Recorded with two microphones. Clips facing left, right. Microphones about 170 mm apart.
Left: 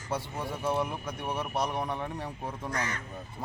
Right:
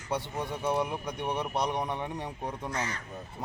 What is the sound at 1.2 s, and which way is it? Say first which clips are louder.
Speech: right 1 dB; 5° left (ahead or behind).